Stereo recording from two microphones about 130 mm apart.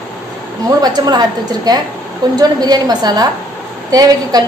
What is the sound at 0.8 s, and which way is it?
A woman's voice, 30° right (ahead or behind).